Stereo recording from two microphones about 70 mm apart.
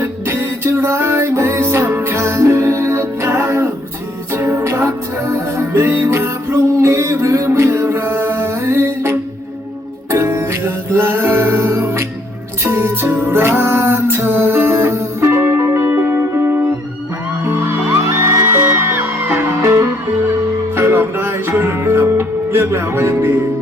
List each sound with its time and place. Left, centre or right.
0.0 s music: right
18.3 s music: right
20.7 s music: right